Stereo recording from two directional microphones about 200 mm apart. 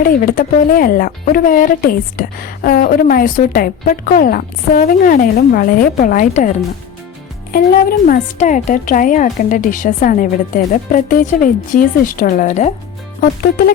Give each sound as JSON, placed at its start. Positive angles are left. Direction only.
{"t": 0.0, "sound": "speech", "side_deg": 45}
{"t": 7.5, "sound": "speech", "side_deg": 45}
{"t": 13.2, "sound": "speech", "side_deg": 50}